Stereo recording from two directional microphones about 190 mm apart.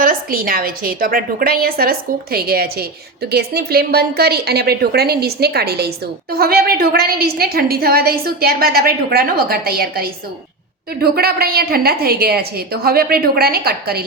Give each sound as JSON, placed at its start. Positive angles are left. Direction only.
{"t": 0.0, "sound": "a woman's voice", "side_deg": -50}